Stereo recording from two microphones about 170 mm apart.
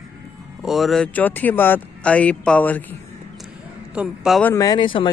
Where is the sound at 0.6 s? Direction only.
Centre (ahead or behind).